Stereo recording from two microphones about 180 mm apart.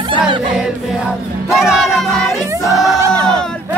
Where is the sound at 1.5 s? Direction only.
Centre (ahead or behind).